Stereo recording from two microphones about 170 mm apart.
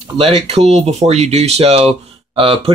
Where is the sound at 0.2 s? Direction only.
35° right (ahead or behind).